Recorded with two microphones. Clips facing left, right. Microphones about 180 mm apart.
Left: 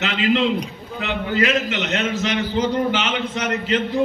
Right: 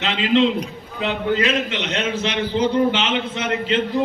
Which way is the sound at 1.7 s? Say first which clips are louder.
Left 1 dB; 45° left (ahead or behind).